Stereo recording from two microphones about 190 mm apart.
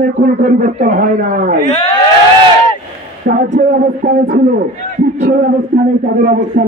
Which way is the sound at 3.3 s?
50° right (ahead or behind).